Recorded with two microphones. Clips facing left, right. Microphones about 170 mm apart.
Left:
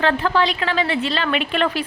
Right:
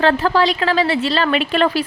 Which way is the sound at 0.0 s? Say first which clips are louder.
Right 3 dB; 40° right (ahead or behind).